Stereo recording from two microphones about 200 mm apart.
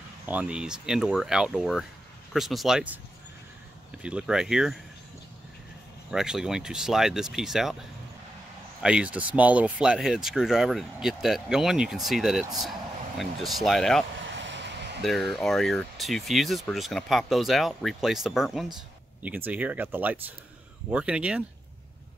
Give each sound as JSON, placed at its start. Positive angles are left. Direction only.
{"t": 0.3, "sound": "speech", "side_deg": -5}
{"t": 4.0, "sound": "speech", "side_deg": -5}
{"t": 6.0, "sound": "speech", "side_deg": -5}
{"t": 8.8, "sound": "speech", "side_deg": -5}
{"t": 14.3, "sound": "a sound", "side_deg": -65}
{"t": 15.0, "sound": "speech", "side_deg": 0}